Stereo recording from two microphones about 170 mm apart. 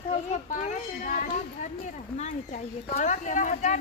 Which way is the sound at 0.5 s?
45° left (ahead or behind).